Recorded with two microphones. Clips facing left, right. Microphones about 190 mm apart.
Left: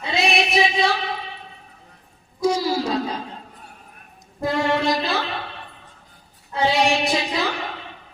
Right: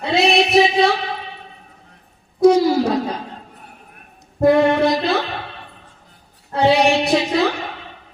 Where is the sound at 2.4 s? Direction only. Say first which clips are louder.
Right 8 dB; 60° right (ahead or behind).